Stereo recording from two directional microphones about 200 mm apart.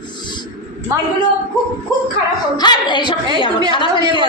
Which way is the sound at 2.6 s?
20° left (ahead or behind).